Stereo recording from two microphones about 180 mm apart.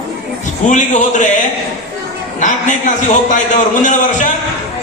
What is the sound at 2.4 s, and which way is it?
A man's voice, 45° left (ahead or behind).